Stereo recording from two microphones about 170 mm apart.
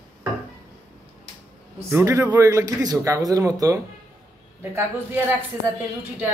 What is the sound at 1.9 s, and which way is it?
Speech, 15° right (ahead or behind).